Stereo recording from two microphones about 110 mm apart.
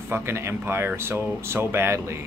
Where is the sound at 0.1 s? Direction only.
25° right (ahead or behind).